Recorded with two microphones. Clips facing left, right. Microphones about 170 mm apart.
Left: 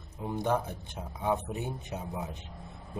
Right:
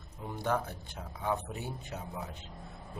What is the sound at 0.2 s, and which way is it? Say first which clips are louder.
Speech: left 3 dB; 20° left (ahead or behind).